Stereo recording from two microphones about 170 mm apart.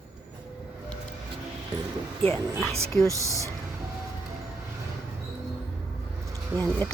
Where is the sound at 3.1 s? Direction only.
20° right (ahead or behind).